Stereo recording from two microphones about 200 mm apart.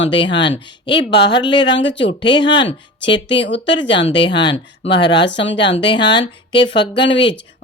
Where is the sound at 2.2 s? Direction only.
25° left (ahead or behind).